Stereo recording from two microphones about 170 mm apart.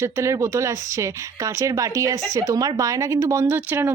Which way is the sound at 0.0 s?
15° right (ahead or behind).